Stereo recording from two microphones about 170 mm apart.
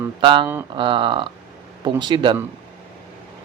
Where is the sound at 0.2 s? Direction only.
30° right (ahead or behind).